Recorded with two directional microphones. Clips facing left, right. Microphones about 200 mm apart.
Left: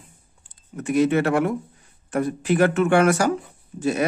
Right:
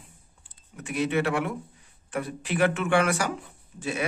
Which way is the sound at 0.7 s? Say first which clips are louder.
Left 7 dB; 45° left (ahead or behind).